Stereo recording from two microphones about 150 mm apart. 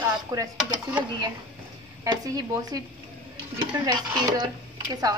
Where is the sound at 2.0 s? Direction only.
25° right (ahead or behind).